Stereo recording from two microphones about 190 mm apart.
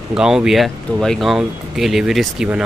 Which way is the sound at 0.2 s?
5° right (ahead or behind).